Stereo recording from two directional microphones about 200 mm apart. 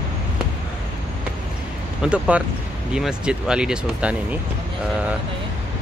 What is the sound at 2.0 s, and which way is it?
Speech, 5° right (ahead or behind).